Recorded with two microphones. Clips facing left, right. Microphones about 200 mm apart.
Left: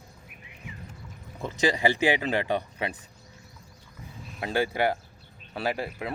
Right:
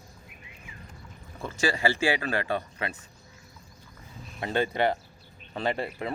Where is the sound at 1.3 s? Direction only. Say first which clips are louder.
Left 2 dB; 20° left (ahead or behind).